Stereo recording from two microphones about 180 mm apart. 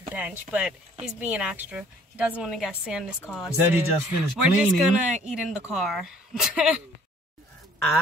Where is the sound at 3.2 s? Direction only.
10° left (ahead or behind).